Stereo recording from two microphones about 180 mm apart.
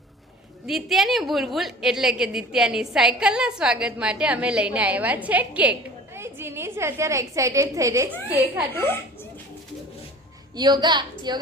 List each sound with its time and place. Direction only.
0.7 s a woman's voice: centre (ahead or behind); by 8.1 s 15° right (ahead or behind)
8.7 s a woman's voice: 10° left (ahead or behind)
10.6 s a woman's voice: 25° right (ahead or behind)